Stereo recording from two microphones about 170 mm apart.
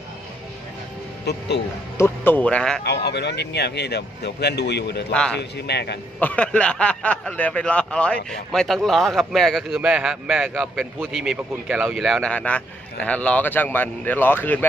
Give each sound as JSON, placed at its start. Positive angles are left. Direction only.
{"t": 1.3, "sound": "speech", "side_deg": 75}
{"t": 2.0, "sound": "speech", "side_deg": 10}
{"t": 2.8, "sound": "speech", "side_deg": 75}
{"t": 6.1, "sound": "speech", "side_deg": 10}